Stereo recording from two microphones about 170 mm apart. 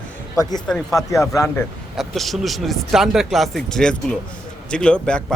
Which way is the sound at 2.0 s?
Centre (ahead or behind).